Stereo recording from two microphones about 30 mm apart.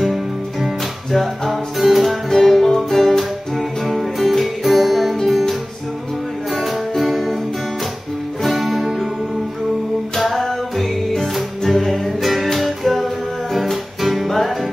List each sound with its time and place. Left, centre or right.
0.0 s music: centre
6.5 s music: centre
8.5 s music: centre
8.8 s music: centre
10.3 s music: centre